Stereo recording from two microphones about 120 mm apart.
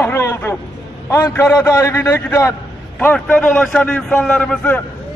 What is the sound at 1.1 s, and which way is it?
A man's voice, 25° left (ahead or behind).